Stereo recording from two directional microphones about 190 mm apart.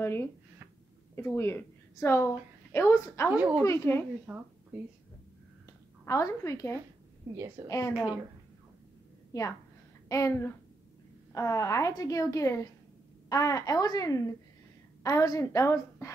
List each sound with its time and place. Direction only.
0.0 s a woman's voice: 15° left (ahead or behind)
3.3 s a woman's voice: 10° right (ahead or behind)
3.6 s a woman's voice: 15° left (ahead or behind)
4.3 s a woman's voice: 10° right (ahead or behind)
5.7 s a woman's voice: 15° left (ahead or behind)
7.3 s a woman's voice: 15° right (ahead or behind)
7.6 s a woman's voice: 15° left (ahead or behind)
7.9 s a woman's voice: 10° right (ahead or behind)
10.0 s a woman's voice: 15° left (ahead or behind)